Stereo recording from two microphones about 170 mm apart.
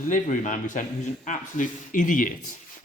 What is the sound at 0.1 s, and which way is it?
A man's voice, 45° left (ahead or behind).